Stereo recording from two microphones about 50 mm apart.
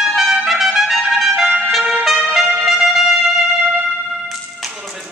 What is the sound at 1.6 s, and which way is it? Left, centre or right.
Music, centre.